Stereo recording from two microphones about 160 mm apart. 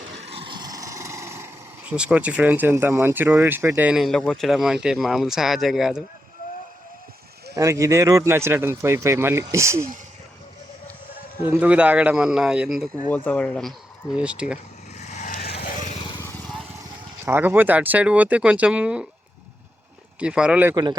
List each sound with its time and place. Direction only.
0.2 s speech: 40° right (ahead or behind); by 6.0 s centre (ahead or behind)
7.5 s speech: 20° right (ahead or behind)
11.4 s speech: 10° right (ahead or behind)
13.1 s speech: 10° left (ahead or behind)
14.2 s speech: 5° right (ahead or behind)
14.9 s vehicle: 45° left (ahead or behind)
15.9 s vehicle: 30° left (ahead or behind)
16.2 s vehicle: 10° left (ahead or behind)
17.2 s speech: 10° right (ahead or behind)
20.1 s speech: 5° right (ahead or behind)